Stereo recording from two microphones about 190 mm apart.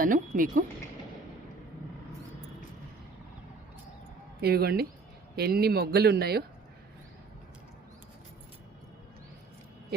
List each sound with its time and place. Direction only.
0.0 s speech: 45° right (ahead or behind)
4.4 s speech: 55° right (ahead or behind)